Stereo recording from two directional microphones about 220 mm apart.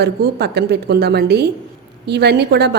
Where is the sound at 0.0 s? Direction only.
45° right (ahead or behind).